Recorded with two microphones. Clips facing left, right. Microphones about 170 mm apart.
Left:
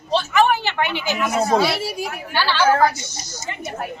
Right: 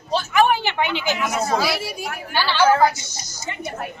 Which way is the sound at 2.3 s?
15° right (ahead or behind).